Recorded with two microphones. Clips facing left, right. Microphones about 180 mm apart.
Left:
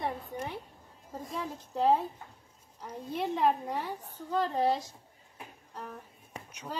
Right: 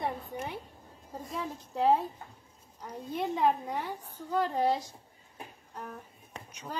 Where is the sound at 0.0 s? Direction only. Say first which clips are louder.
Even; 5° right (ahead or behind).